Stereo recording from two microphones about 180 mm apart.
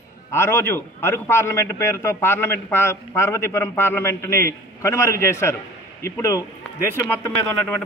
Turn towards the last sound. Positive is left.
turn(degrees=10)  # may be behind; listen again after turning